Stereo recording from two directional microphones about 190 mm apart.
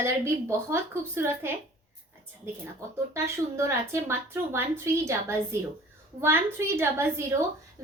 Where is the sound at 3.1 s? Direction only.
15° right (ahead or behind).